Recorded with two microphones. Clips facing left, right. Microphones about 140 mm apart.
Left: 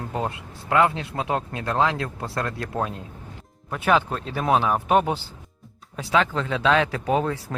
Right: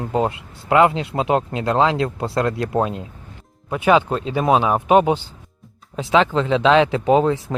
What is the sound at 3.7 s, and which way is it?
Speech, 15° right (ahead or behind).